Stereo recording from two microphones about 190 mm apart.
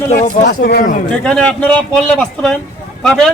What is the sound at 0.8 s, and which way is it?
Speech, 45° left (ahead or behind).